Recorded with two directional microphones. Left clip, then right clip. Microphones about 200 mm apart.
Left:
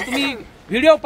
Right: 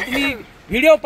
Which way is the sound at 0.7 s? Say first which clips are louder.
Right 1 dB; 45° right (ahead or behind).